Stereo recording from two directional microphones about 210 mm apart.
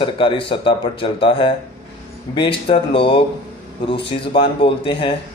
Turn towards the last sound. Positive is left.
turn(degrees=25)  # may be behind; listen again after turning